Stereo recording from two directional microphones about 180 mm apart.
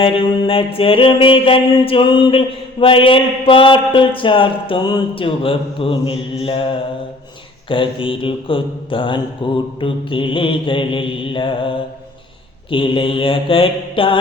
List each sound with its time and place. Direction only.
0.0 s mantra: 30° left (ahead or behind)
2.8 s a man's voice: 30° left (ahead or behind)